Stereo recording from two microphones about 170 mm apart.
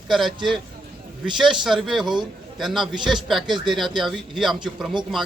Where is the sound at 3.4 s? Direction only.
25° right (ahead or behind).